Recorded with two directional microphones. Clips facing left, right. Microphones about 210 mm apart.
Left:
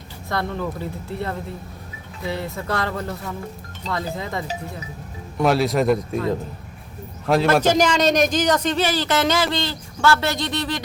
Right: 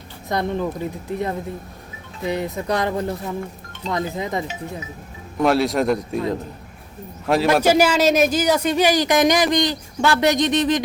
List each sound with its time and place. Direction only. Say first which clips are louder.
0.3 s speech: right 3 dB; 20° right (ahead or behind)
5.4 s a man's voice: right 1 dB; centre (ahead or behind)
7.4 s speech: right 3 dB; 10° right (ahead or behind)